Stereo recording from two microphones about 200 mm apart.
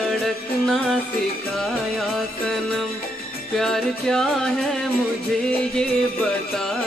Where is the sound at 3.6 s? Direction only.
5° left (ahead or behind).